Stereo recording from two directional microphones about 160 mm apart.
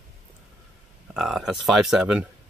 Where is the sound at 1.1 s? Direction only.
Centre (ahead or behind).